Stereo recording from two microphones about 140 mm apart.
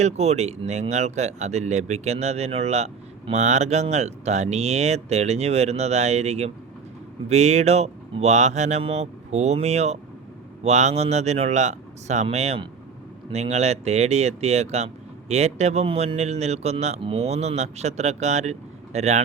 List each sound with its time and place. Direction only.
0.0 s speech: 50° right (ahead or behind)